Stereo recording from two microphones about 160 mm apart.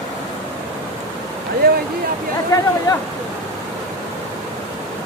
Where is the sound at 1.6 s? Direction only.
70° right (ahead or behind).